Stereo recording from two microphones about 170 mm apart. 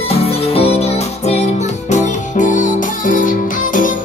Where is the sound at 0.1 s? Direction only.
35° left (ahead or behind).